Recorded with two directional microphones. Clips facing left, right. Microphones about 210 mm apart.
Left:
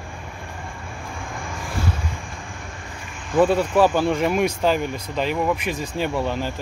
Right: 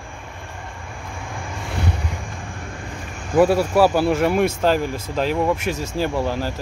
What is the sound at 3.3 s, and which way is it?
Speech, 10° right (ahead or behind).